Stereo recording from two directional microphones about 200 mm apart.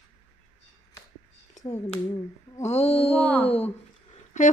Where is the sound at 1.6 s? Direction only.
35° left (ahead or behind).